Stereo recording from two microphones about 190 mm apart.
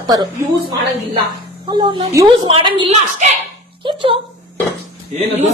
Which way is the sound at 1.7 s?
20° right (ahead or behind).